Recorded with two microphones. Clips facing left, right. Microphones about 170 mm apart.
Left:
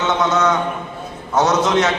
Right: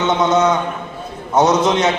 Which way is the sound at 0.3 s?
15° right (ahead or behind).